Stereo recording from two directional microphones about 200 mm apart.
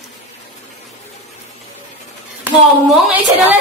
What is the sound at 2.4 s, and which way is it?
Speech, 5° right (ahead or behind).